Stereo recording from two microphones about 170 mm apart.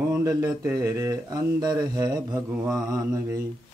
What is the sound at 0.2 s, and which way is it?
Speech, 20° right (ahead or behind).